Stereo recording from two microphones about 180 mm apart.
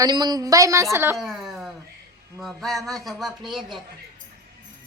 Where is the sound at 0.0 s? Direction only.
20° right (ahead or behind).